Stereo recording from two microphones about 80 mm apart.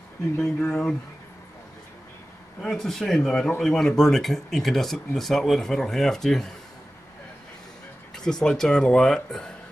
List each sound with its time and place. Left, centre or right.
0.6 s speech: centre
2.6 s speech: centre
8.2 s speech: centre